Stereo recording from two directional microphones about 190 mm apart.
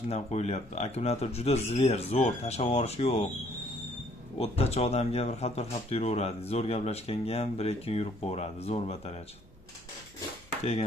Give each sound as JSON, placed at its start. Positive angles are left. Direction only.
{"t": 0.1, "sound": "speech", "side_deg": 35}
{"t": 4.4, "sound": "speech", "side_deg": 35}
{"t": 10.6, "sound": "speech", "side_deg": 30}